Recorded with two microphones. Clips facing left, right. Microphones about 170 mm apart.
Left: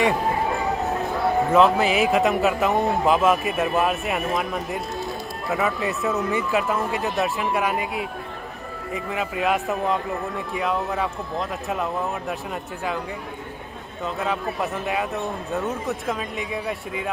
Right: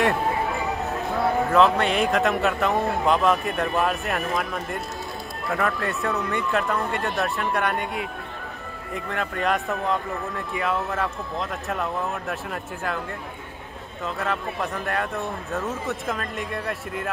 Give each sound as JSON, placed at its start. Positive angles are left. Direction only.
{"t": 1.2, "sound": "speech", "side_deg": 0}
{"t": 14.0, "sound": "speech", "side_deg": 0}